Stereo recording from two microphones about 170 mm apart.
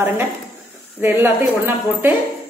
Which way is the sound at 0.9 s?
10° right (ahead or behind).